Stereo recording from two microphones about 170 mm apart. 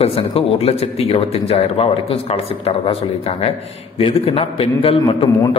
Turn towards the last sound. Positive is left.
turn(degrees=30)  # may be behind; listen again after turning